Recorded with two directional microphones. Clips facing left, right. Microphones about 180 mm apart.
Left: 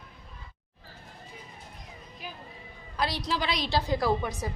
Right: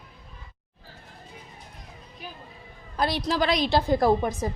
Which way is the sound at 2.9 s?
50° right (ahead or behind).